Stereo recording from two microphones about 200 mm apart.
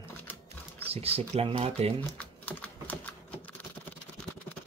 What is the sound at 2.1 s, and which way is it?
Typing, 5° left (ahead or behind).